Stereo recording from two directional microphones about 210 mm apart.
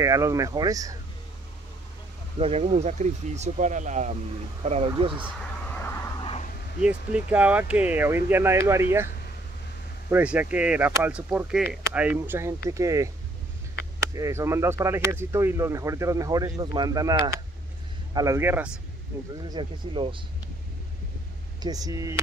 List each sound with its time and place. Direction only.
0.0 s speech: 15° right (ahead or behind)
2.3 s speech: 25° right (ahead or behind)
5.8 s vehicle: 10° left (ahead or behind)
6.2 s a sound: 30° left (ahead or behind)
6.8 s speech: 5° right (ahead or behind)
10.0 s speech: 5° right (ahead or behind)
19.4 s speech: 20° right (ahead or behind)
21.6 s speech: 15° right (ahead or behind)